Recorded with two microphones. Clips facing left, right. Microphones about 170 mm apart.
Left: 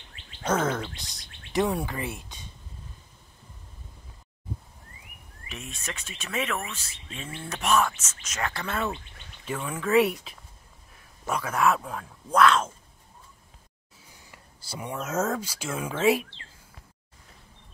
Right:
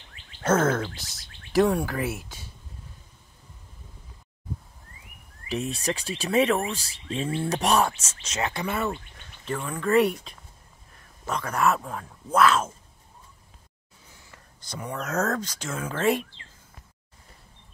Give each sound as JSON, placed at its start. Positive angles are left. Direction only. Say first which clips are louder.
{"t": 0.4, "sound": "a sound", "louder": "right 4 dB", "side_deg": -5}
{"t": 1.5, "sound": "speech", "louder": "right 4 dB", "side_deg": 0}
{"t": 5.5, "sound": "speech", "louder": "right 11 dB", "side_deg": -35}
{"t": 9.5, "sound": "speech", "louder": "right 1 dB", "side_deg": 5}
{"t": 14.2, "sound": "speech", "louder": "even", "side_deg": 15}